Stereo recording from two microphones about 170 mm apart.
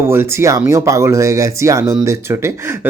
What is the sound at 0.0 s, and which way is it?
Speech, 15° right (ahead or behind).